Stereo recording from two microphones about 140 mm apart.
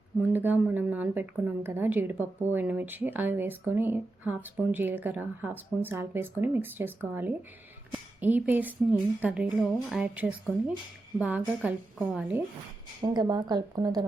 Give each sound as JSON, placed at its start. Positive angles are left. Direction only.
{"t": 0.2, "sound": "speech", "side_deg": -15}
{"t": 13.0, "sound": "speech", "side_deg": -30}